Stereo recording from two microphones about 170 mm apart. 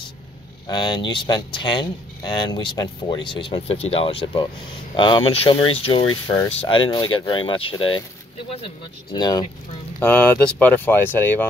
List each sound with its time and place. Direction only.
0.7 s speech: 25° left (ahead or behind)
9.1 s speech: 25° left (ahead or behind)
9.9 s speech: 10° left (ahead or behind)